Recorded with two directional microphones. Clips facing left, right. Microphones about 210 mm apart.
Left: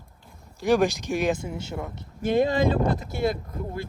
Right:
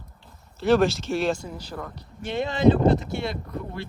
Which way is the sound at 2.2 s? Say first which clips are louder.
Right 1 dB; 50° left (ahead or behind).